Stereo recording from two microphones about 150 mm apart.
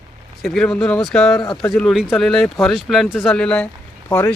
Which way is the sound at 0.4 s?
5° left (ahead or behind).